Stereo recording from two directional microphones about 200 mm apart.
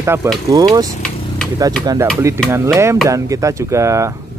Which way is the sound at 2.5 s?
15° right (ahead or behind).